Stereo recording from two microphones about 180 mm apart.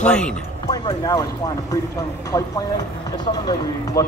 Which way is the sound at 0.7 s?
20° left (ahead or behind).